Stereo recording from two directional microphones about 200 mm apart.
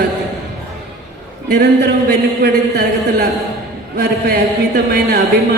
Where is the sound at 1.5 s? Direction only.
55° right (ahead or behind).